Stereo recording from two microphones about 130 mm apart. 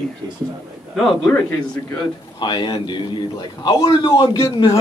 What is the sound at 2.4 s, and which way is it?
A man's voice, 35° left (ahead or behind).